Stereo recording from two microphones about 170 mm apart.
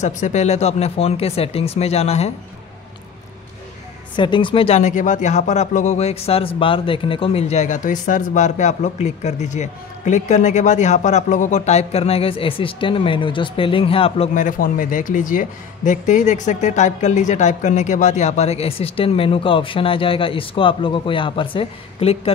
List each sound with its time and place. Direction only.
0.0 s speech: 45° left (ahead or behind)
4.2 s speech: 30° left (ahead or behind)
14.3 s speech: 50° left (ahead or behind); by 22.3 s 35° left (ahead or behind)